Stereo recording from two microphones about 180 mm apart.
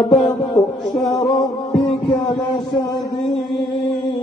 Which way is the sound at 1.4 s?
20° left (ahead or behind).